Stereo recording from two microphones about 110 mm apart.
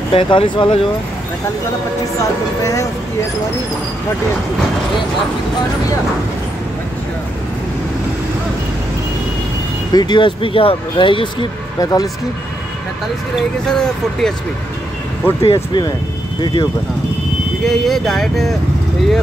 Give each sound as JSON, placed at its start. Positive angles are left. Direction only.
{"t": 0.1, "sound": "speech", "side_deg": 55}
{"t": 2.1, "sound": "speech", "side_deg": 30}
{"t": 9.9, "sound": "speech", "side_deg": 45}
{"t": 11.8, "sound": "speech", "side_deg": 35}
{"t": 13.7, "sound": "speech", "side_deg": 5}
{"t": 15.4, "sound": "speech", "side_deg": 45}
{"t": 17.6, "sound": "speech", "side_deg": 0}